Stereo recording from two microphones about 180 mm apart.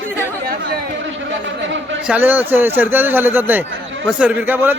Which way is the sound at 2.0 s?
10° right (ahead or behind).